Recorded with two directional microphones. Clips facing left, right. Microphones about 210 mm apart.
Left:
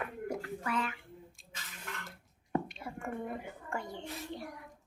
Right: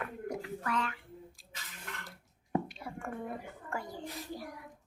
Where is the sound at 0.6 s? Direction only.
5° left (ahead or behind).